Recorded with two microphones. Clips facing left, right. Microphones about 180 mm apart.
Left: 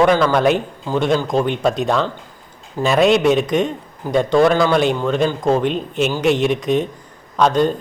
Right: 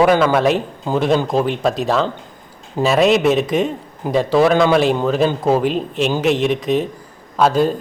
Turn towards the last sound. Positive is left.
turn(degrees=-5)  # may be behind; listen again after turning